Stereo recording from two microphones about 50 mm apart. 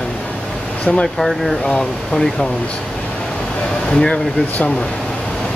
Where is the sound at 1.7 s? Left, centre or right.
Centre.